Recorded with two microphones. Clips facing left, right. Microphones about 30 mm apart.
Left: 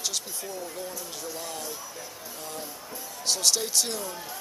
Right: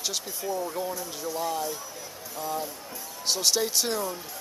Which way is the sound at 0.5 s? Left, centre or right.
Centre.